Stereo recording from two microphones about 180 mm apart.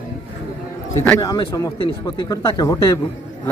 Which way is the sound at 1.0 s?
15° left (ahead or behind).